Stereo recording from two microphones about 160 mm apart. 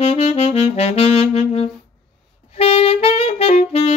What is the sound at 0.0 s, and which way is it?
Saxophone, 40° left (ahead or behind).